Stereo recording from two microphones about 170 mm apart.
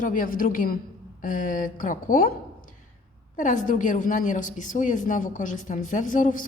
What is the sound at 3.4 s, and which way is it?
A woman's voice, 45° left (ahead or behind).